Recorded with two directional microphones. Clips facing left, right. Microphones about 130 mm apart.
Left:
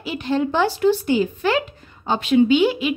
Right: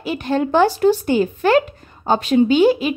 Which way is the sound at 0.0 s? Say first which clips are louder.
Right 2 dB; 50° right (ahead or behind).